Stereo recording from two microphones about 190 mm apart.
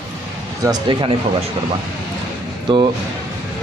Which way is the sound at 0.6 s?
25° right (ahead or behind).